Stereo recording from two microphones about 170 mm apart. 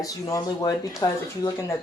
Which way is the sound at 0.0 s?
20° left (ahead or behind).